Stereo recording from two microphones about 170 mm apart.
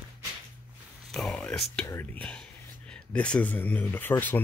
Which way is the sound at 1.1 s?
5° left (ahead or behind).